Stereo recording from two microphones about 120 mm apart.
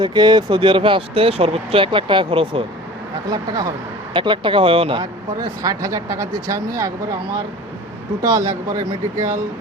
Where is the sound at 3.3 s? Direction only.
35° right (ahead or behind).